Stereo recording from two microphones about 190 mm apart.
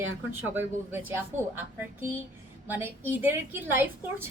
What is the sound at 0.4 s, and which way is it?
A woman's voice, 10° right (ahead or behind).